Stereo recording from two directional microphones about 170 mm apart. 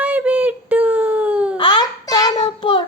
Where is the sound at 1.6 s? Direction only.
30° left (ahead or behind).